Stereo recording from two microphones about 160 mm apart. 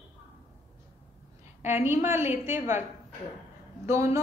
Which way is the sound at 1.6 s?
15° right (ahead or behind).